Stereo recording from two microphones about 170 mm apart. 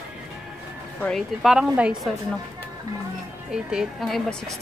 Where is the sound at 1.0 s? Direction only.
5° left (ahead or behind).